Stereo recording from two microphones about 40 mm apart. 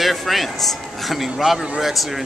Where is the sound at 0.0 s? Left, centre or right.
Centre.